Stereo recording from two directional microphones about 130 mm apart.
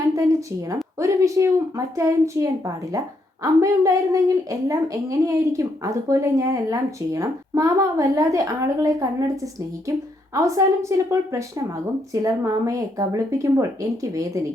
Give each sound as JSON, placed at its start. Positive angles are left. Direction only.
{"t": 0.1, "sound": "a woman's voice", "side_deg": -25}